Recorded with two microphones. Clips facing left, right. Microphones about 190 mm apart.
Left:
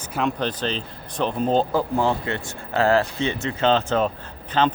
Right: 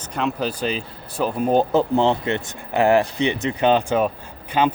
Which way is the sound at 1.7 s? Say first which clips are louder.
Right 4 dB; 25° right (ahead or behind).